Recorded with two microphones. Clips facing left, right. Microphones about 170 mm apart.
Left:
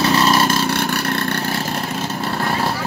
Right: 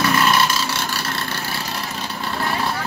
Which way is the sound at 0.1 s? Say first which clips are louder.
Left 3 dB; 35° left (ahead or behind).